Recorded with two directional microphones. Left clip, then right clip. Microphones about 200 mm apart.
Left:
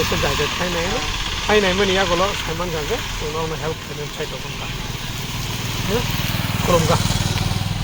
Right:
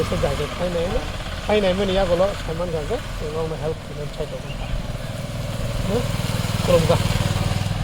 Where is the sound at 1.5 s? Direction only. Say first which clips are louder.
Left 2 dB; 5° left (ahead or behind).